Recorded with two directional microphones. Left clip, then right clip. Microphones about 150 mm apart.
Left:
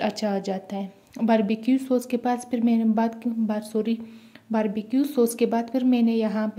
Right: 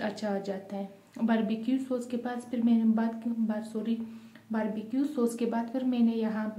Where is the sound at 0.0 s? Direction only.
45° left (ahead or behind).